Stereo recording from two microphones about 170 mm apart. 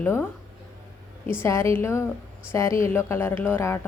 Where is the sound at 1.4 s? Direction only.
15° left (ahead or behind).